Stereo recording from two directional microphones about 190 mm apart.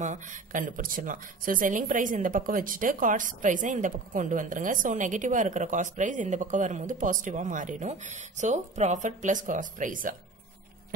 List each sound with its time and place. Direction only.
0.0 s speech: 40° right (ahead or behind)